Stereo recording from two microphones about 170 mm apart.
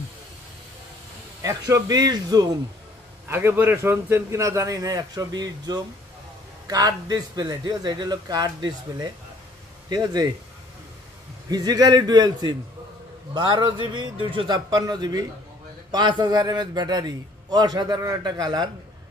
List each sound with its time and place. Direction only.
1.4 s a man's voice: 20° right (ahead or behind)
3.3 s a man's voice: 15° right (ahead or behind)
11.5 s a man's voice: 20° right (ahead or behind)